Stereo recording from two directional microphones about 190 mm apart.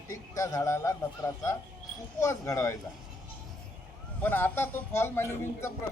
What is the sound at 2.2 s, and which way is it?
Speech, 15° left (ahead or behind).